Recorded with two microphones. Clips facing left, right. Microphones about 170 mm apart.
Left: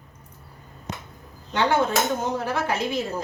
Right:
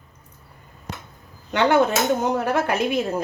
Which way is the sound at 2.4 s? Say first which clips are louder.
Right 4 dB; 60° right (ahead or behind).